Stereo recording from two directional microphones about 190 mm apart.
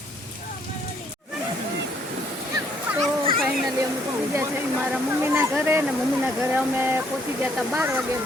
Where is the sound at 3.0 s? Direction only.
30° right (ahead or behind).